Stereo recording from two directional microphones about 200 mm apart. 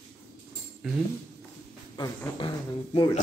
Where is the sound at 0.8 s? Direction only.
Centre (ahead or behind).